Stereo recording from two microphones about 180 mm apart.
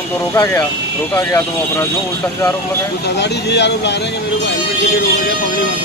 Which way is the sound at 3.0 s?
70° left (ahead or behind).